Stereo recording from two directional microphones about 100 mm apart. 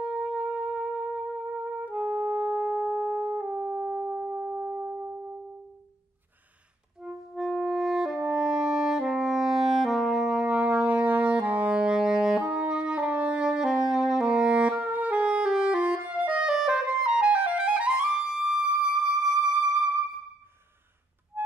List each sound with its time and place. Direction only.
0.0 s music: 10° right (ahead or behind)
7.0 s music: 5° right (ahead or behind)